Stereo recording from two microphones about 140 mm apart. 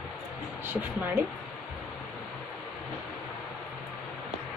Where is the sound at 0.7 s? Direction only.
15° right (ahead or behind).